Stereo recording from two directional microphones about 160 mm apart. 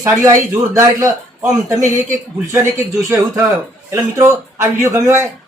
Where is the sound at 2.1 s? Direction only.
20° right (ahead or behind).